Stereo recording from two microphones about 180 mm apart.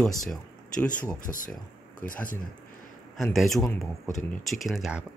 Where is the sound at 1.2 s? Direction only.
50° left (ahead or behind).